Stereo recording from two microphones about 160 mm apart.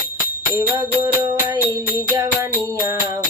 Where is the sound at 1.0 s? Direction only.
20° right (ahead or behind).